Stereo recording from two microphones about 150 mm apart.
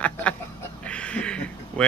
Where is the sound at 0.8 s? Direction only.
5° left (ahead or behind).